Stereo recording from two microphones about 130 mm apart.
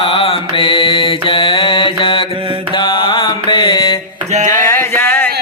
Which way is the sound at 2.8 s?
40° left (ahead or behind).